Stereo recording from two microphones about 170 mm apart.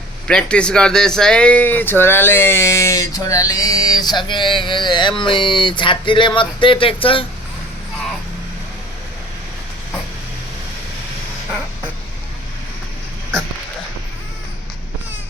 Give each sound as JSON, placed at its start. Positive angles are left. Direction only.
{"t": 0.3, "sound": "speech", "side_deg": 5}